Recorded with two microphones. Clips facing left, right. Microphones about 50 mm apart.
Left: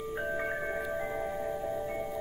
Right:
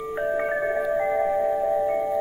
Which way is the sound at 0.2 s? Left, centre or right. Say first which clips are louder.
Right 10 dB; right.